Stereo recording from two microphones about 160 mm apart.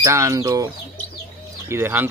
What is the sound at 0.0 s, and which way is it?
Speech, 20° right (ahead or behind).